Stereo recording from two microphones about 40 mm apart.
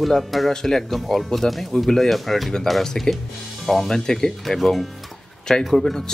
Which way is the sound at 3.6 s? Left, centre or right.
Centre.